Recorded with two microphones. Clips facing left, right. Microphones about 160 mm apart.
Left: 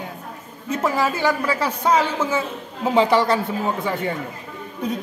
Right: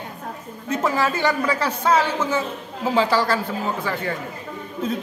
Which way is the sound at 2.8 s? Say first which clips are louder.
Left 3 dB; 20° left (ahead or behind).